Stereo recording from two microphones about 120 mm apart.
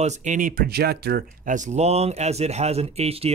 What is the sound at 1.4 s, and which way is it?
Speech, 90° right.